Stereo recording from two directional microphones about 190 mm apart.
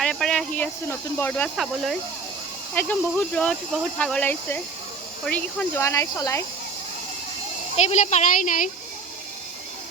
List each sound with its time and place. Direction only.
0.0 s speech: centre (ahead or behind)
7.9 s a woman's voice: 35° left (ahead or behind)